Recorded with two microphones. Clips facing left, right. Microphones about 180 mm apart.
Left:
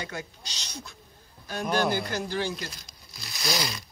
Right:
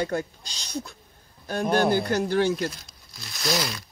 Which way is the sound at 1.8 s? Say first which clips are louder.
Right 5 dB; 45° right (ahead or behind).